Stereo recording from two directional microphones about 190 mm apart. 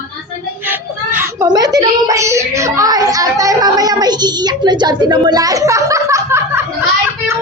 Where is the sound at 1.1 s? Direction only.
20° right (ahead or behind).